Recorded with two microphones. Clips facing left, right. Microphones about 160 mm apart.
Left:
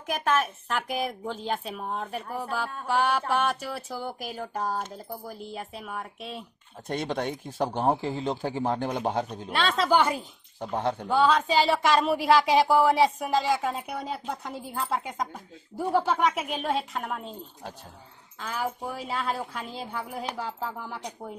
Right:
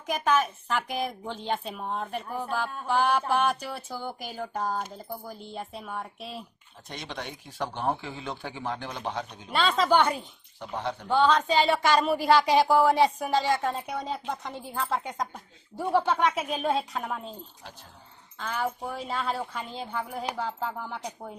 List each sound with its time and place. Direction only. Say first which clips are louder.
0.0 s a woman's voice: right 1 dB; 5° left (ahead or behind)
6.9 s speech: left 9 dB; 50° left (ahead or behind)
9.5 s a woman's voice: right 1 dB; centre (ahead or behind)
10.6 s speech: left 4 dB; 40° left (ahead or behind)
11.1 s a woman's voice: right 1 dB; 5° left (ahead or behind)
18.4 s a woman's voice: right 1 dB; 5° left (ahead or behind)